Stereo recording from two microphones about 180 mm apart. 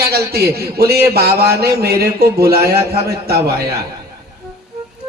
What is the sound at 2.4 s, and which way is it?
Speech, 15° right (ahead or behind).